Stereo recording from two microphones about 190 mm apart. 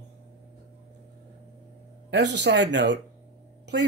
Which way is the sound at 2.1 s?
65° right (ahead or behind).